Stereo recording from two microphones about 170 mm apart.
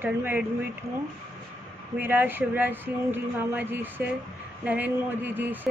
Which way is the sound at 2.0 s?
10° right (ahead or behind).